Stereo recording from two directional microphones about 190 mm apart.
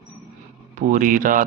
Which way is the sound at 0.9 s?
45° right (ahead or behind).